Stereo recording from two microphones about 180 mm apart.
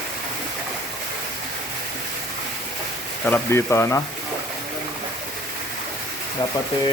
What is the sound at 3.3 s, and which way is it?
Speech, 15° left (ahead or behind).